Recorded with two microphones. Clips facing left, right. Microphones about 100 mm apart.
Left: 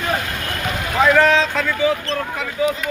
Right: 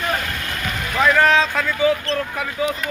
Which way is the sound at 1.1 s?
Centre (ahead or behind).